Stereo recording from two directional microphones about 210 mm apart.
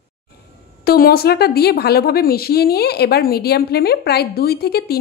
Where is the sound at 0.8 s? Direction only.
45° left (ahead or behind).